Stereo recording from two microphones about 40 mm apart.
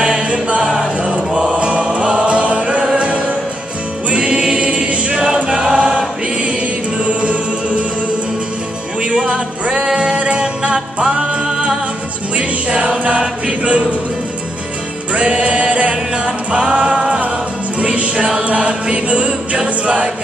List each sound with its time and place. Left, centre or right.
0.0 s music: right
1.3 s choir: centre
1.6 s music: right
4.1 s choir: right
5.1 s choir: centre
7.2 s music: right
9.1 s music: right
15.1 s music: right
18.2 s choir: right